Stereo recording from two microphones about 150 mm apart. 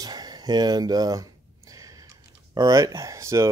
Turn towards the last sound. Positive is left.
turn(degrees=-20)  # may be behind; listen again after turning